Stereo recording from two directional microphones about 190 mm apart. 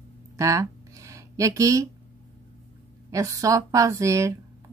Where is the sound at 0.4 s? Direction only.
15° right (ahead or behind).